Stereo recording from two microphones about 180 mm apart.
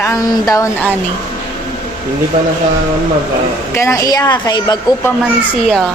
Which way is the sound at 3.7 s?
15° left (ahead or behind).